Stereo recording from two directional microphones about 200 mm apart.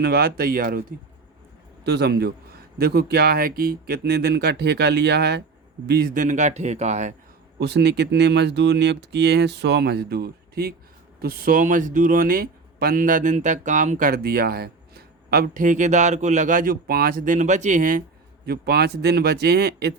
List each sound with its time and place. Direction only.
0.0 s speech: 50° right (ahead or behind); by 7.1 s 35° right (ahead or behind)
7.6 s speech: 55° right (ahead or behind)
18.4 s speech: 55° right (ahead or behind)